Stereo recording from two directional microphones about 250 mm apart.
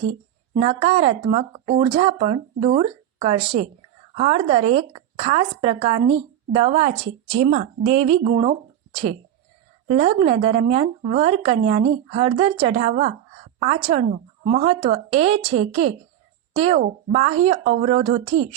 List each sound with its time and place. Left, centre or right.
0.6 s speech: right
9.9 s speech: right